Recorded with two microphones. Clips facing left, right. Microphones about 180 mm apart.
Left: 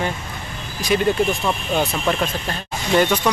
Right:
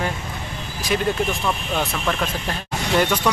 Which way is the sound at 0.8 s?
Centre (ahead or behind).